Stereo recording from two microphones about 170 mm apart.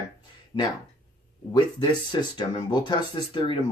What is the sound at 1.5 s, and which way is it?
Speech, 25° left (ahead or behind).